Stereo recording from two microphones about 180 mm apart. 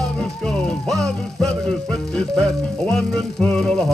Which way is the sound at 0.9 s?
Centre (ahead or behind).